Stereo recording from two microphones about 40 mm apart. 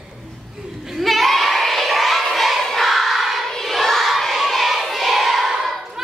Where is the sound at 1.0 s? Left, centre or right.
Centre.